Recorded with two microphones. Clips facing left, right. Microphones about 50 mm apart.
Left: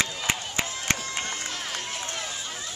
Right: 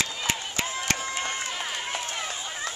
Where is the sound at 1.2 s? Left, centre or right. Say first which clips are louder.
Right 2 dB; right.